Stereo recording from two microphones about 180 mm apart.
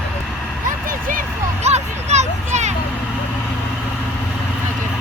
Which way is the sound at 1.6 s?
40° right (ahead or behind).